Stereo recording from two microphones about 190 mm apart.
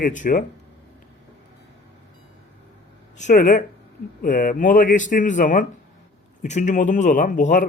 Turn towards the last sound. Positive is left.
turn(degrees=45)  # may be behind; listen again after turning